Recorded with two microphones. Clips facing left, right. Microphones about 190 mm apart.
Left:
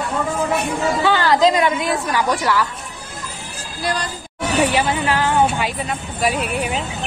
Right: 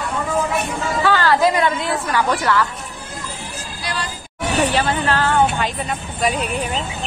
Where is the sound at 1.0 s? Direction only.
15° left (ahead or behind).